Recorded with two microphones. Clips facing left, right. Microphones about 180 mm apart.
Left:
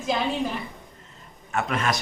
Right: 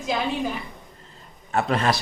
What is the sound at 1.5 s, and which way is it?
Speech, 35° right (ahead or behind).